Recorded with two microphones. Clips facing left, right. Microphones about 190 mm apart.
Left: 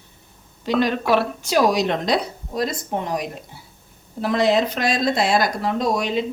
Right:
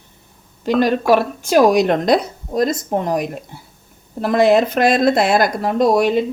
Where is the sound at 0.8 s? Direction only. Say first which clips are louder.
Right 5 dB; 45° right (ahead or behind).